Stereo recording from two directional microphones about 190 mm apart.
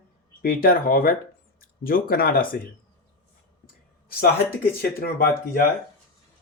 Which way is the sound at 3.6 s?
50° left (ahead or behind).